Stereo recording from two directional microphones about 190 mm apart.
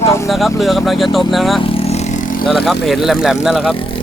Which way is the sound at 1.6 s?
30° left (ahead or behind).